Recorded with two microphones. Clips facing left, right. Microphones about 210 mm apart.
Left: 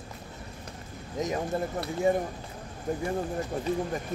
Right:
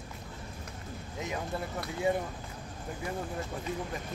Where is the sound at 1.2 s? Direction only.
40° left (ahead or behind).